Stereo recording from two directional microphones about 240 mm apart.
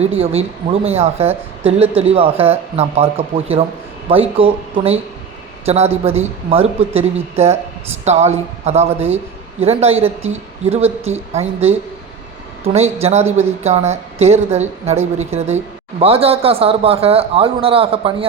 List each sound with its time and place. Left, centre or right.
0.3 s a woman's voice: right